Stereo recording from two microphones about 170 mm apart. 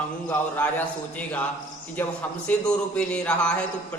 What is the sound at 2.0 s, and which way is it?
A man's voice, 10° left (ahead or behind).